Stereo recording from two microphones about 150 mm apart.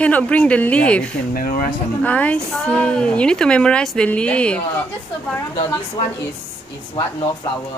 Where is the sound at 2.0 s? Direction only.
10° left (ahead or behind).